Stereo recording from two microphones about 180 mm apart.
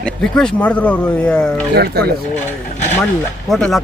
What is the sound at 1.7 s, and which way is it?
Speech, 60° right (ahead or behind).